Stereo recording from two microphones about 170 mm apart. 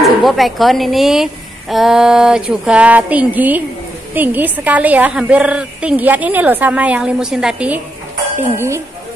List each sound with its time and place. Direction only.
0.0 s a woman's voice: centre (ahead or behind); by 8.8 s 15° right (ahead or behind)